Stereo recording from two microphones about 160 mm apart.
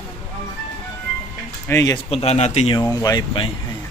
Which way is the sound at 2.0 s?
40° left (ahead or behind).